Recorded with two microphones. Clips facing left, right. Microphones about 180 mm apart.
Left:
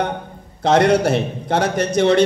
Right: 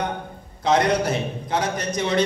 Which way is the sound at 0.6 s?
65° left (ahead or behind).